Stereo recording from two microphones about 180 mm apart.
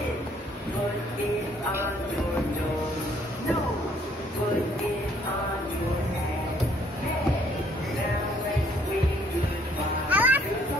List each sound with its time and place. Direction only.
10.0 s children playing: 10° right (ahead or behind)